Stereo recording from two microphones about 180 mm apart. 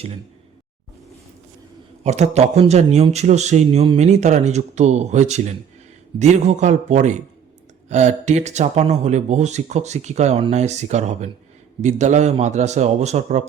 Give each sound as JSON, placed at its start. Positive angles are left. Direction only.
{"t": 2.0, "sound": "speech", "side_deg": -40}